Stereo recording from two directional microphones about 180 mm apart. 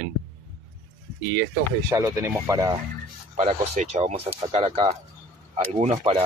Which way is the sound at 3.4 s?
35° right (ahead or behind).